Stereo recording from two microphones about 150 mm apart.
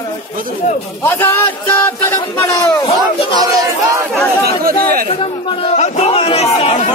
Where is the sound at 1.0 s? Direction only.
15° left (ahead or behind).